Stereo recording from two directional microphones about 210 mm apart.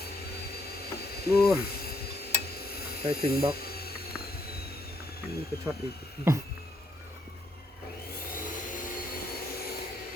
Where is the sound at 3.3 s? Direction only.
45° left (ahead or behind).